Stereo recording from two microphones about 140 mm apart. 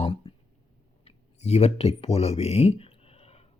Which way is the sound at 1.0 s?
45° left (ahead or behind).